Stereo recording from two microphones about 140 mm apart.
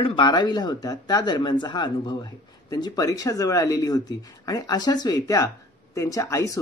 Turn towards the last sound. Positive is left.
turn(degrees=20)  # may be behind; listen again after turning